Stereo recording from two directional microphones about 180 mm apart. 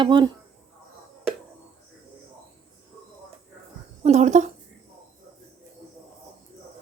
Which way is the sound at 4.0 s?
40° right (ahead or behind).